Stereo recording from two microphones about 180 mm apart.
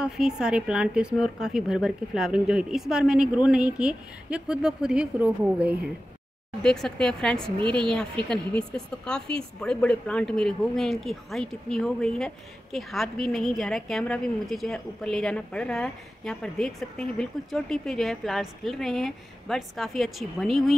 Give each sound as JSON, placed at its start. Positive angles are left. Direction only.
{"t": 0.0, "sound": "a woman's voice", "side_deg": -5}
{"t": 6.6, "sound": "a woman's voice", "side_deg": 5}
{"t": 7.5, "sound": "a woman's voice", "side_deg": -25}
{"t": 8.3, "sound": "a woman's voice", "side_deg": 5}